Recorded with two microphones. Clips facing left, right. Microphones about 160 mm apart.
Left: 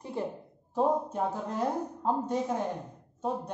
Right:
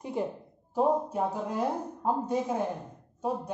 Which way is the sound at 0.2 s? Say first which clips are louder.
Right 2 dB; 15° right (ahead or behind).